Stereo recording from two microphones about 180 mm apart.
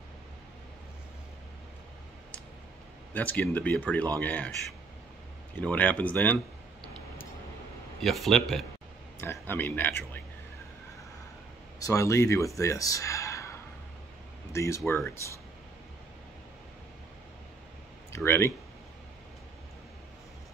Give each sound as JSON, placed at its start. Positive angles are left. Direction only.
{"t": 3.1, "sound": "speech", "side_deg": 10}
{"t": 5.6, "sound": "speech", "side_deg": 10}
{"t": 8.0, "sound": "speech", "side_deg": 0}
{"t": 9.2, "sound": "speech", "side_deg": 10}
{"t": 11.8, "sound": "speech", "side_deg": 15}
{"t": 18.1, "sound": "speech", "side_deg": 15}